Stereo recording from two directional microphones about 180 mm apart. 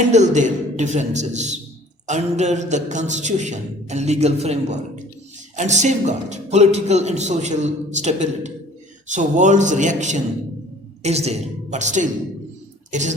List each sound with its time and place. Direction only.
0.1 s a man's voice: 40° right (ahead or behind)